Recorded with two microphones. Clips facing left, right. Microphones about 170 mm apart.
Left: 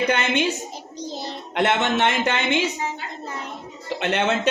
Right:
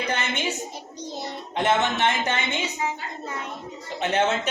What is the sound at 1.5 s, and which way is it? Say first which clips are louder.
A man's voice: left 2 dB; 75° left (ahead or behind).